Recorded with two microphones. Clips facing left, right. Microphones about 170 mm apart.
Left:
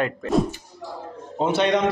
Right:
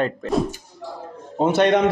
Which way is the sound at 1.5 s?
50° right (ahead or behind).